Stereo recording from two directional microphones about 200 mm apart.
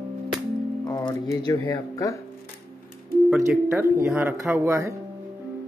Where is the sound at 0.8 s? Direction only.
20° left (ahead or behind).